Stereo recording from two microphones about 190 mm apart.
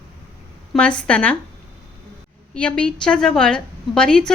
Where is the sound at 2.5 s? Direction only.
5° left (ahead or behind).